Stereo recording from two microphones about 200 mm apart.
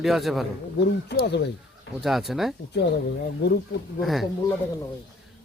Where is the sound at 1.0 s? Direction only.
55° left (ahead or behind).